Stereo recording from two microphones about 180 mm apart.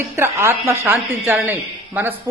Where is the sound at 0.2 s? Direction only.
15° right (ahead or behind).